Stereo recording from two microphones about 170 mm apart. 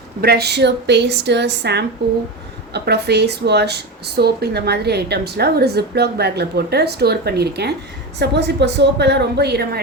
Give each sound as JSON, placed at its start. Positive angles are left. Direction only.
{"t": 0.2, "sound": "a woman's voice", "side_deg": -70}
{"t": 8.2, "sound": "a woman's voice", "side_deg": -85}